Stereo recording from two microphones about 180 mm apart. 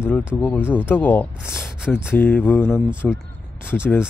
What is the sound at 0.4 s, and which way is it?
Speech, 10° left (ahead or behind).